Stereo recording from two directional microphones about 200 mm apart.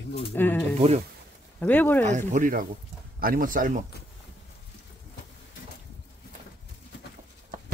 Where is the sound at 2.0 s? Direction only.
40° right (ahead or behind).